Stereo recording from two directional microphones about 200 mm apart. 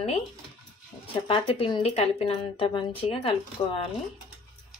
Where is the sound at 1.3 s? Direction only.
25° left (ahead or behind).